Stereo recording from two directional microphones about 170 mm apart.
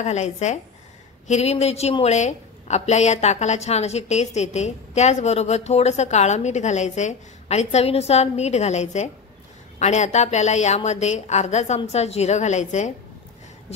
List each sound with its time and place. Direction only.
0.0 s a woman's voice: 40° left (ahead or behind)